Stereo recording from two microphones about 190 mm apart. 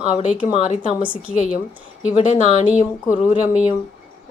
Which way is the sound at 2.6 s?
10° right (ahead or behind).